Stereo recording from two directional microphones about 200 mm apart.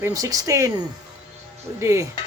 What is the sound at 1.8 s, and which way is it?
Speech, 15° right (ahead or behind).